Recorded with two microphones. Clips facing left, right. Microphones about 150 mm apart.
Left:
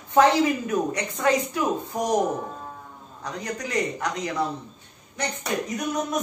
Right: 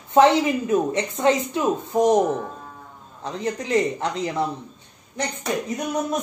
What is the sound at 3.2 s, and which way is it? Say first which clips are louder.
Speech: right 5 dB; 25° right (ahead or behind).